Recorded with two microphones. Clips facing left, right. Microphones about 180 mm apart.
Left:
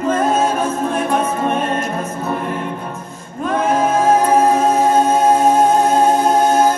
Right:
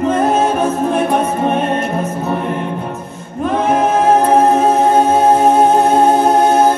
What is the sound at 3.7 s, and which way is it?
Music, 65° right (ahead or behind).